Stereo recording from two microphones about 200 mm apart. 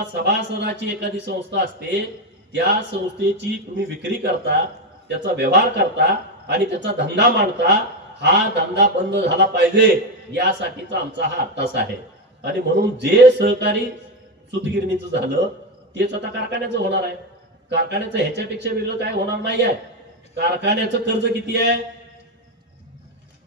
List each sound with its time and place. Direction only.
0.1 s a man's voice: 60° right (ahead or behind)
3.3 s a man's voice: 60° right (ahead or behind)